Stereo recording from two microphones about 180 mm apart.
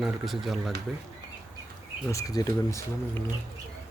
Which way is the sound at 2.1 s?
20° left (ahead or behind).